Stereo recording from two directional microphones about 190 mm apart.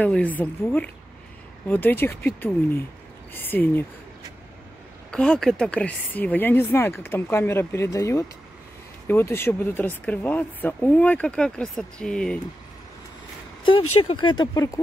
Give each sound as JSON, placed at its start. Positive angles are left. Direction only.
{"t": 0.0, "sound": "speech", "side_deg": 5}
{"t": 5.1, "sound": "speech", "side_deg": 5}
{"t": 13.7, "sound": "speech", "side_deg": 25}